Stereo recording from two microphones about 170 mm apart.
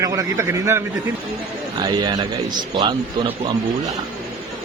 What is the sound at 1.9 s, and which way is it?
A man's voice, 25° right (ahead or behind).